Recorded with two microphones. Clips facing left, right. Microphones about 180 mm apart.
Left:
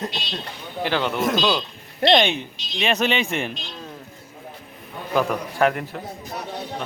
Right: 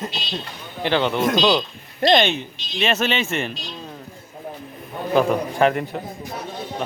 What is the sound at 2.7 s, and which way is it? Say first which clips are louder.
Speech: even; 15° left (ahead or behind).